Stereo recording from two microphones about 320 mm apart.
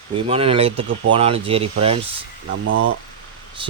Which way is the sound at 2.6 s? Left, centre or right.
Right.